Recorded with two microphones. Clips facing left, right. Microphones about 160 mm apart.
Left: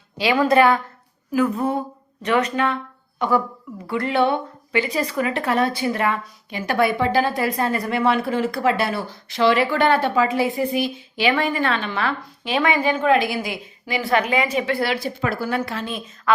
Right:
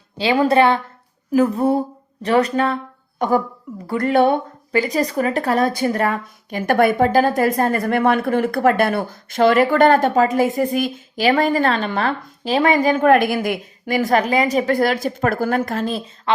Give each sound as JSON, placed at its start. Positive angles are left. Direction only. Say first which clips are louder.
{"t": 0.2, "sound": "a woman's voice", "louder": "right 1 dB", "side_deg": -30}